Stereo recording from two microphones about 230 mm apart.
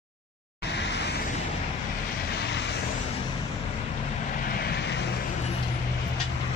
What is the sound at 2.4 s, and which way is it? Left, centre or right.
Vehicle, left.